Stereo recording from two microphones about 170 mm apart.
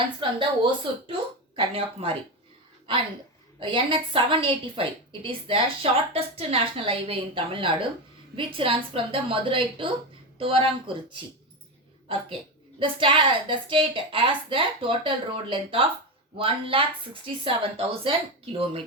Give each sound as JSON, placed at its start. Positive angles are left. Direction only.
{"t": 0.0, "sound": "a woman's voice", "side_deg": -30}
{"t": 12.8, "sound": "a woman's voice", "side_deg": -30}